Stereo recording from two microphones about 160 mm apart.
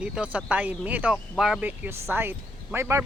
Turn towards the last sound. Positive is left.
turn(degrees=-15)  # may be behind; listen again after turning